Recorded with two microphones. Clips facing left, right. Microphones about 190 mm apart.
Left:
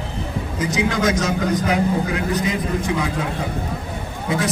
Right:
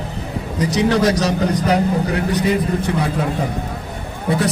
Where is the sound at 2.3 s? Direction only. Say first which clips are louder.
Right 4 dB; 65° right (ahead or behind).